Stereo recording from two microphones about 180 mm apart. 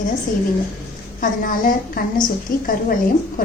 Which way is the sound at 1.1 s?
50° left (ahead or behind).